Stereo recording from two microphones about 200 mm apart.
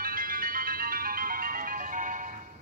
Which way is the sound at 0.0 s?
45° right (ahead or behind).